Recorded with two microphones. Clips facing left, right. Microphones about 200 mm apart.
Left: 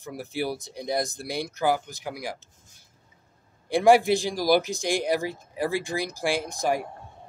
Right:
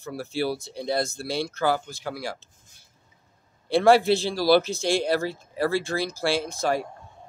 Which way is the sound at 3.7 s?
15° left (ahead or behind).